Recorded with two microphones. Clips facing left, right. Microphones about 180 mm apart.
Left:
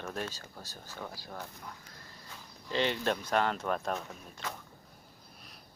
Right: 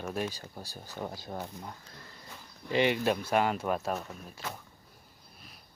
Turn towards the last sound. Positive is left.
turn(degrees=-5)  # may be behind; listen again after turning